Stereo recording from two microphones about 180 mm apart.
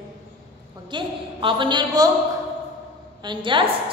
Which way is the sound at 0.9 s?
25° right (ahead or behind).